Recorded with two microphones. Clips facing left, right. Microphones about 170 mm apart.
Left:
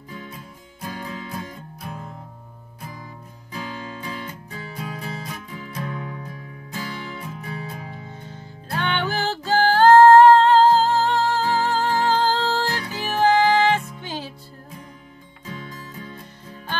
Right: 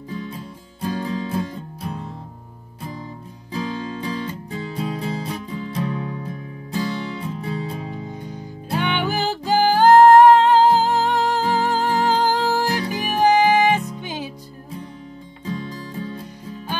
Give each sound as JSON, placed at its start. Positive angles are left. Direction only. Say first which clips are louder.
{"t": 0.1, "sound": "music", "louder": "right 6 dB", "side_deg": -35}
{"t": 3.5, "sound": "music", "louder": "right 6 dB", "side_deg": -35}
{"t": 8.1, "sound": "music", "louder": "right 6 dB", "side_deg": -15}
{"t": 15.4, "sound": "music", "louder": "right 7 dB", "side_deg": -35}